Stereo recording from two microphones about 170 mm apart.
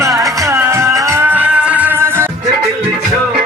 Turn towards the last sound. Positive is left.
turn(degrees=-15)  # may be behind; listen again after turning